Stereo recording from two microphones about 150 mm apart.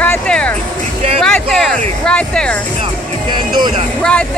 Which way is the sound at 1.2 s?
5° left (ahead or behind).